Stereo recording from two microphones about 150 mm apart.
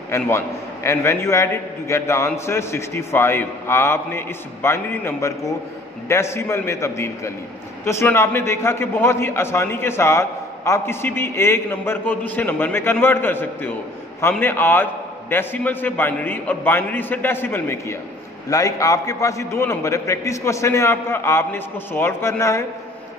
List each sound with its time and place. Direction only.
0.1 s a man's voice: 20° left (ahead or behind)